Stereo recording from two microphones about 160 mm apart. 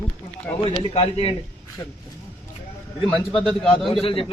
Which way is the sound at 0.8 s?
40° left (ahead or behind).